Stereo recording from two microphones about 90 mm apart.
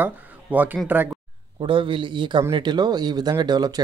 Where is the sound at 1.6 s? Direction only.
70° right (ahead or behind).